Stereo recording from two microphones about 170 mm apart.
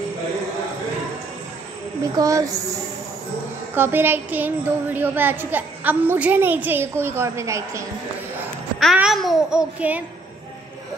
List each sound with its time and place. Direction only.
2.1 s speech: 20° right (ahead or behind)
3.7 s a woman's voice: 10° right (ahead or behind)
8.7 s babbling: centre (ahead or behind)